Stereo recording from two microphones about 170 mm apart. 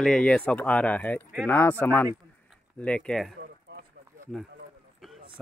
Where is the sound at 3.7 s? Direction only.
75° right (ahead or behind).